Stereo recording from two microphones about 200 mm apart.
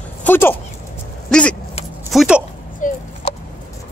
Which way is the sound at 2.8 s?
40° left (ahead or behind).